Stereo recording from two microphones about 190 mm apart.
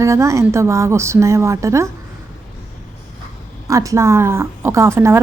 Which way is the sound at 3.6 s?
15° right (ahead or behind).